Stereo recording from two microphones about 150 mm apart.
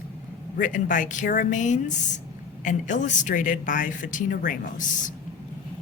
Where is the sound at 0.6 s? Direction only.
60° left (ahead or behind).